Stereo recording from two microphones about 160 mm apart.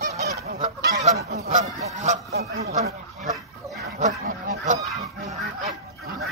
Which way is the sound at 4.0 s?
55° right (ahead or behind).